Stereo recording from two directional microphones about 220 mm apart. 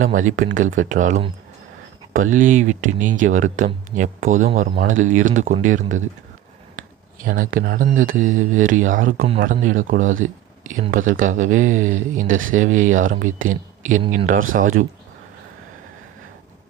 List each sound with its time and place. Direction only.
0.0 s speech: 35° right (ahead or behind)